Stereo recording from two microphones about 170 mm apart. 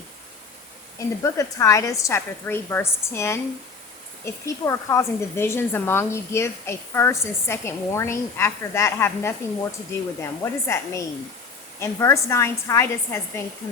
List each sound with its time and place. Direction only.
0.9 s a woman's voice: 20° left (ahead or behind)
4.4 s a woman's voice: 20° left (ahead or behind)